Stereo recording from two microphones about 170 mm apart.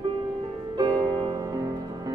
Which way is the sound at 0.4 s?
25° right (ahead or behind).